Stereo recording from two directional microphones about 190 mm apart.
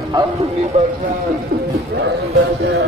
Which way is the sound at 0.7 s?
35° right (ahead or behind).